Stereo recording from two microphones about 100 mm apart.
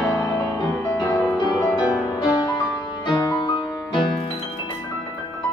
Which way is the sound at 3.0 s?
45° left (ahead or behind).